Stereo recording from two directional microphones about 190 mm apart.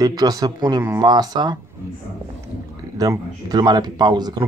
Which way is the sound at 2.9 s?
20° right (ahead or behind).